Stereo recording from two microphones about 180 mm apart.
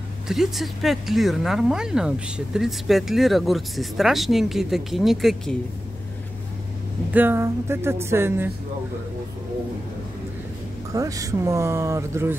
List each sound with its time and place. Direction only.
0.3 s speech: centre (ahead or behind)
7.1 s speech: 10° right (ahead or behind)
10.9 s speech: 20° right (ahead or behind)